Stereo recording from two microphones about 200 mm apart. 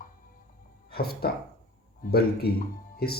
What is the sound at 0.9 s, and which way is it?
Speech, 50° left (ahead or behind).